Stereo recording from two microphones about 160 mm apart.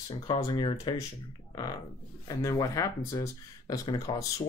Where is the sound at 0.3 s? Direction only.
30° left (ahead or behind).